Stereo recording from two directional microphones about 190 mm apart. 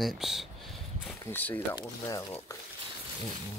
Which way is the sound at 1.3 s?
10° left (ahead or behind).